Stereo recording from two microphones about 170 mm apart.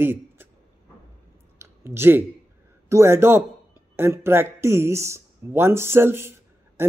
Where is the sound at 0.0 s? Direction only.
15° right (ahead or behind).